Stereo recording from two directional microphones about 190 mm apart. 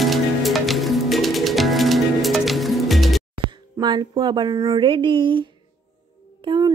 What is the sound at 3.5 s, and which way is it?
A woman's voice, 25° right (ahead or behind).